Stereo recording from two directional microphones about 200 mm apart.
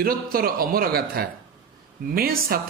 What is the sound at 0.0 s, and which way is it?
A man's voice, 45° right (ahead or behind).